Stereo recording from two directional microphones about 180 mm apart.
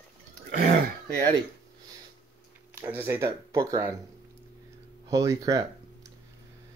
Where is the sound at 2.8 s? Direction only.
10° right (ahead or behind).